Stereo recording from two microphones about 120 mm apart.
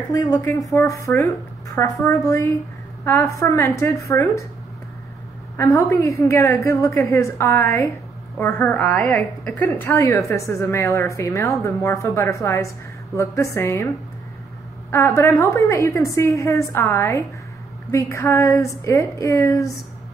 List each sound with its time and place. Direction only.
0.1 s a woman's voice: 30° left (ahead or behind)
5.6 s a woman's voice: 25° left (ahead or behind)
9.5 s a woman's voice: 20° left (ahead or behind)
14.9 s a woman's voice: 20° left (ahead or behind)